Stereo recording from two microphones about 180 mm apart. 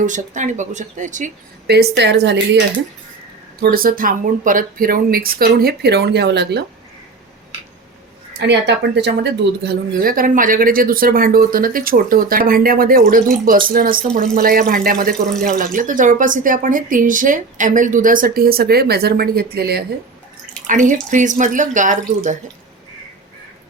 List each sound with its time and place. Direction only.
0.0 s speech: 45° right (ahead or behind)
1.6 s speech: 65° right (ahead or behind)
3.6 s speech: 50° right (ahead or behind); by 6.7 s 70° right (ahead or behind)
8.3 s speech: 70° right (ahead or behind)
20.7 s speech: 45° right (ahead or behind)